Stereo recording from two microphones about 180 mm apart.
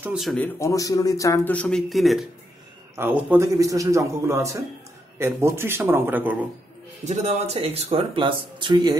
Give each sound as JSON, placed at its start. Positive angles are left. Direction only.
{"t": 0.0, "sound": "speech", "side_deg": -5}
{"t": 0.6, "sound": "speech", "side_deg": 20}
{"t": 7.1, "sound": "speech", "side_deg": -40}